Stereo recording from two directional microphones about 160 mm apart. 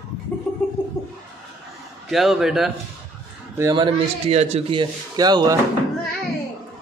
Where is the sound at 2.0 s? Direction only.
Centre (ahead or behind).